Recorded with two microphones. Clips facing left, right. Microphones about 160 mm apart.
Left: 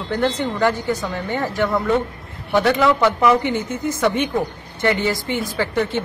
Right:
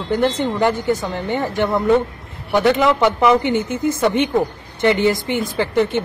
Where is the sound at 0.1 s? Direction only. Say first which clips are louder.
Right 3 dB; 15° right (ahead or behind).